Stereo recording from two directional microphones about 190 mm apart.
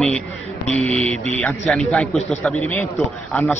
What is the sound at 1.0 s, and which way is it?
Speech, 35° right (ahead or behind).